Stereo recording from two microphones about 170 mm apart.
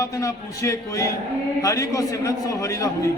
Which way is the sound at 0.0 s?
20° left (ahead or behind).